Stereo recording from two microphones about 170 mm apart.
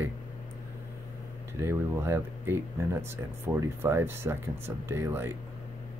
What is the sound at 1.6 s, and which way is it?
Speech, 15° right (ahead or behind).